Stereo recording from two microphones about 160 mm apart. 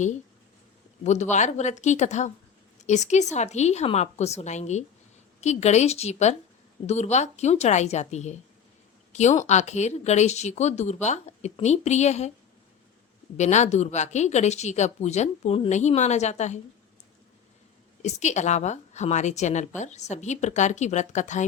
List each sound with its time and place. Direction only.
1.0 s a woman's voice: 45° left (ahead or behind)
9.4 s a woman's voice: 45° left (ahead or behind)
13.3 s a woman's voice: 45° left (ahead or behind)
18.0 s a woman's voice: 45° left (ahead or behind)